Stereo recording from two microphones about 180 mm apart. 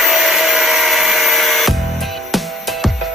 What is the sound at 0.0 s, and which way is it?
Music, centre (ahead or behind).